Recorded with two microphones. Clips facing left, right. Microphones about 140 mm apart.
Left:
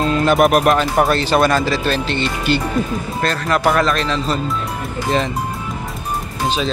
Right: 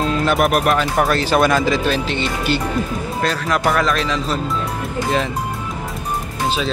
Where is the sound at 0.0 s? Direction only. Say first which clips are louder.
Left 3 dB; centre (ahead or behind).